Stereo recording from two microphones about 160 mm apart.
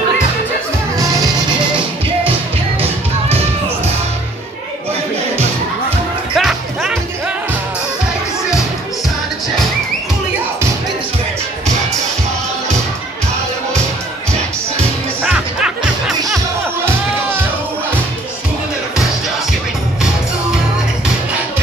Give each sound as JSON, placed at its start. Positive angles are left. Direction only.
{"t": 0.9, "sound": "music", "side_deg": -20}
{"t": 6.3, "sound": "music", "side_deg": 0}
{"t": 15.2, "sound": "music", "side_deg": -5}